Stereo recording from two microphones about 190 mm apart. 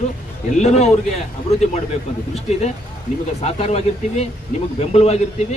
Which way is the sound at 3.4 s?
35° left (ahead or behind).